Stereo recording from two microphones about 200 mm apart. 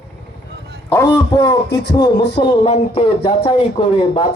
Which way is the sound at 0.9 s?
15° left (ahead or behind).